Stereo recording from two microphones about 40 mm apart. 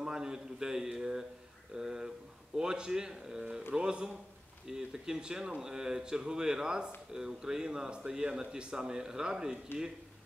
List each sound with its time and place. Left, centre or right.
0.0 s a man's voice: centre